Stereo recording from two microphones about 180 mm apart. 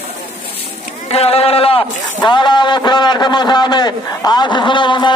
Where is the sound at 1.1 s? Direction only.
35° left (ahead or behind).